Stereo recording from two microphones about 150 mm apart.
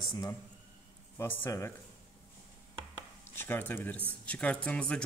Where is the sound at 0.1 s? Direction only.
25° left (ahead or behind).